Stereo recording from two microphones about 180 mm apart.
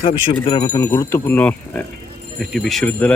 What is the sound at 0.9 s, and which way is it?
Speech, 10° left (ahead or behind).